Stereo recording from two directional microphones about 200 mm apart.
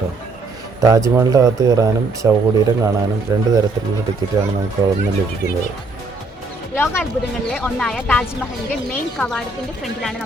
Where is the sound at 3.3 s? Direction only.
15° right (ahead or behind).